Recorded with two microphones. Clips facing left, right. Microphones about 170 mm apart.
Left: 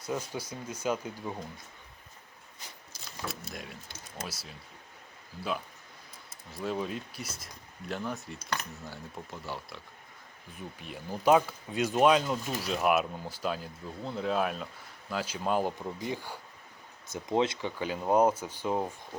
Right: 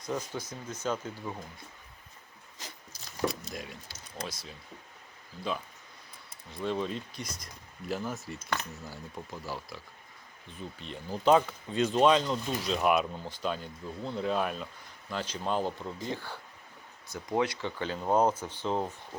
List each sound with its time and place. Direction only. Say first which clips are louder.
0.0 s speech: even; 10° left (ahead or behind)
2.6 s a sound: right 3 dB; 90° right
3.2 s speech: right 7 dB; centre (ahead or behind)
6.5 s speech: right 1 dB; 5° left (ahead or behind)
10.6 s speech: right 1 dB; 10° left (ahead or behind)